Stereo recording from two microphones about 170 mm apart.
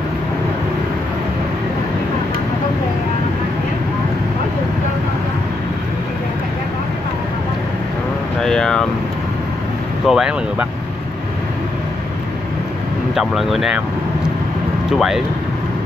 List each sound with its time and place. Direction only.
8.4 s vehicle: 5° left (ahead or behind)
10.0 s speech: 5° right (ahead or behind)
13.1 s speech: centre (ahead or behind)
14.9 s speech: centre (ahead or behind)